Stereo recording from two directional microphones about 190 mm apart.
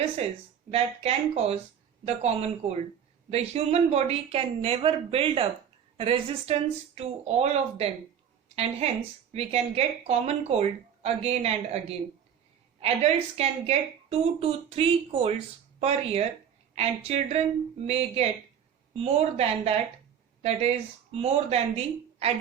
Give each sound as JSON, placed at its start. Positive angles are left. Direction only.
{"t": 0.7, "sound": "speech", "side_deg": -35}
{"t": 9.3, "sound": "speech", "side_deg": -30}